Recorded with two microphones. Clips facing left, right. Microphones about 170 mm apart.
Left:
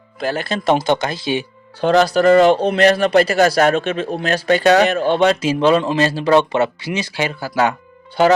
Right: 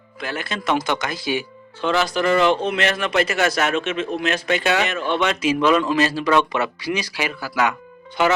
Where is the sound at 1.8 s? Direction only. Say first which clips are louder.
Left 7 dB; 40° left (ahead or behind).